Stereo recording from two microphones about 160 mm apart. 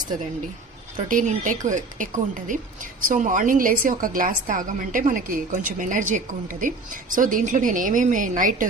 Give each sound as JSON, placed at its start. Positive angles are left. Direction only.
{"t": 1.0, "sound": "a woman's voice", "side_deg": -55}